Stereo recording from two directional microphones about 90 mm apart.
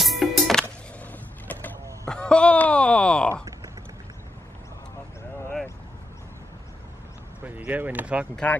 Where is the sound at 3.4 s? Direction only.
40° right (ahead or behind).